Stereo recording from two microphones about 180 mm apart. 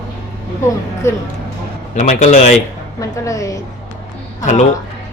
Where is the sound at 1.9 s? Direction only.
40° left (ahead or behind).